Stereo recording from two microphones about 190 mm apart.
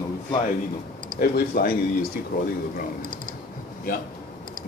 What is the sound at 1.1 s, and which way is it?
Speech, 50° left (ahead or behind).